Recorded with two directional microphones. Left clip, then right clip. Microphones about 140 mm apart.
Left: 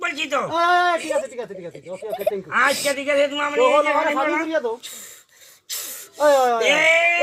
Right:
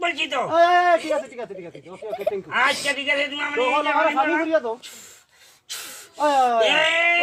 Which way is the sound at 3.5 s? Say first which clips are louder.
Left 3 dB; 10° right (ahead or behind).